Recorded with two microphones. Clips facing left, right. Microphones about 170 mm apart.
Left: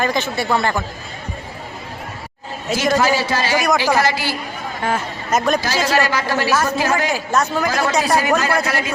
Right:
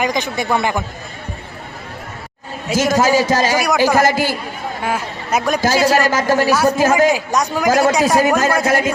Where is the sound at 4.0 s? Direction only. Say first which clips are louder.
Right 4 dB; 50° right (ahead or behind).